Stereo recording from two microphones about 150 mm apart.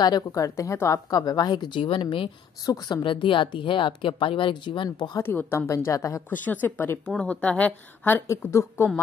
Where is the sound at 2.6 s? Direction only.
25° left (ahead or behind).